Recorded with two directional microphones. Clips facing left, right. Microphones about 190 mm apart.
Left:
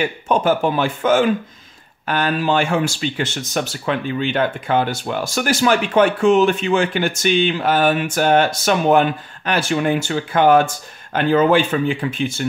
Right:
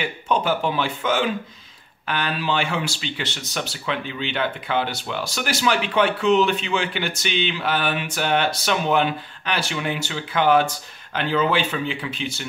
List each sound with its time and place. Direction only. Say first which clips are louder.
0.0 s speech: left 5 dB; 45° left (ahead or behind)